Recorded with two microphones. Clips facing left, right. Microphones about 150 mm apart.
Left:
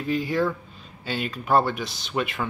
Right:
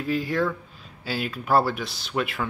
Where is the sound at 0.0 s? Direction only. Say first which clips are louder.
Left 1 dB; centre (ahead or behind).